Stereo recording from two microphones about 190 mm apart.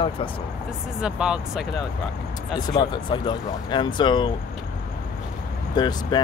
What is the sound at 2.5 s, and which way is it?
Speech, 20° left (ahead or behind).